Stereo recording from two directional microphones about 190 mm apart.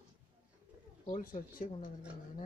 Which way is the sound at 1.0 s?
40° left (ahead or behind).